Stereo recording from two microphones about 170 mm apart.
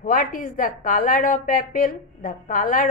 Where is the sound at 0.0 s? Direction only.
50° left (ahead or behind).